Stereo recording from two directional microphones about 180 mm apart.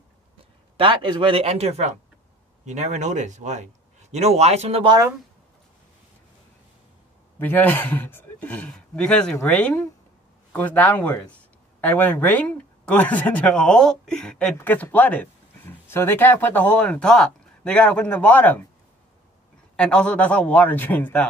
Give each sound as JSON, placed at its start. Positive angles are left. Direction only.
{"t": 0.7, "sound": "speech", "side_deg": -30}
{"t": 7.3, "sound": "speech", "side_deg": 10}
{"t": 19.8, "sound": "speech", "side_deg": 5}